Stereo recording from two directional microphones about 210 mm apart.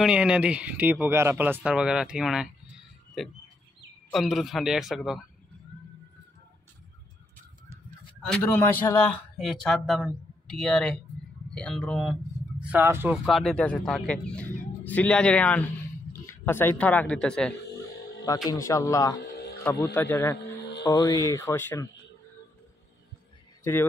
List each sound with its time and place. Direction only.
0.0 s a man's voice: 5° right (ahead or behind)
4.1 s a man's voice: centre (ahead or behind)
8.3 s a man's voice: 10° left (ahead or behind); by 13.2 s 10° right (ahead or behind)
13.2 s speech: centre (ahead or behind)
18.5 s speech: 15° left (ahead or behind)
20.3 s music: 55° left (ahead or behind)
20.9 s speech: 15° left (ahead or behind)
23.6 s a man's voice: 10° left (ahead or behind)